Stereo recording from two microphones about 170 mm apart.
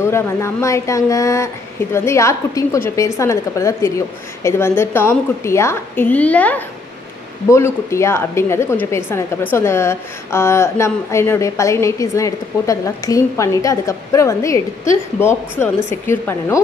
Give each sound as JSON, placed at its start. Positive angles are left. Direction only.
{"t": 0.0, "sound": "a woman's voice", "side_deg": 15}